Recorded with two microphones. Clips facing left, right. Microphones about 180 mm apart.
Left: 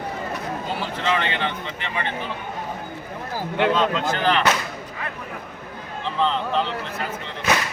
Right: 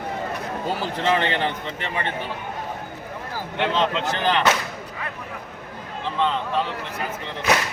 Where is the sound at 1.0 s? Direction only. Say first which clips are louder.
Right 3 dB; 35° right (ahead or behind).